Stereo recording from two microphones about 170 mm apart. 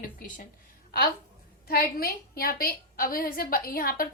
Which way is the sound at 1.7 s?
60° left (ahead or behind).